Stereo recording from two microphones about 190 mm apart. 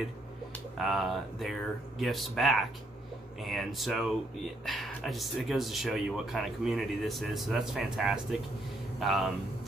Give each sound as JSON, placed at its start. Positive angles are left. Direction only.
{"t": 0.7, "sound": "speech", "side_deg": 0}